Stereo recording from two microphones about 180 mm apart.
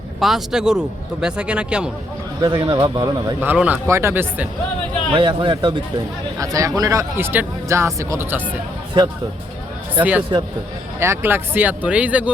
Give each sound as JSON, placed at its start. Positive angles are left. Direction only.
{"t": 0.2, "sound": "speech", "side_deg": 0}
{"t": 2.4, "sound": "speech", "side_deg": -25}
{"t": 3.4, "sound": "speech", "side_deg": -10}
{"t": 5.1, "sound": "speech", "side_deg": -25}
{"t": 10.0, "sound": "speech", "side_deg": -5}